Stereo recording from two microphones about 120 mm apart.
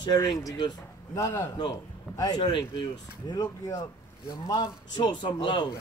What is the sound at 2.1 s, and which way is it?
A man's voice, 35° left (ahead or behind).